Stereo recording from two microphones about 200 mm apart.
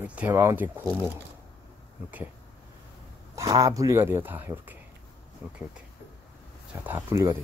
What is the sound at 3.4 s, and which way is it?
Speech, 15° right (ahead or behind).